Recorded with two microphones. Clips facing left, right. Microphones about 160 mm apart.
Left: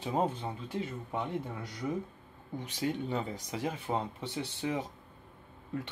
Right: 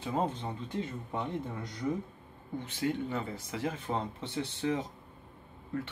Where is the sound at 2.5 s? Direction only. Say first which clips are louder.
Right 1 dB; 15° left (ahead or behind).